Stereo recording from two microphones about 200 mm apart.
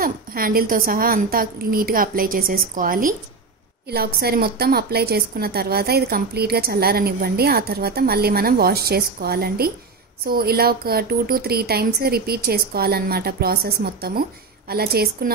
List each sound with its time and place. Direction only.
0.0 s a woman's voice: 45° right (ahead or behind)